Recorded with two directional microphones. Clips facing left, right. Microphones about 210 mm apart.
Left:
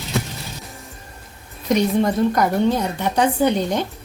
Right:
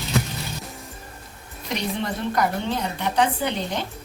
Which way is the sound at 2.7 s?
45° left (ahead or behind).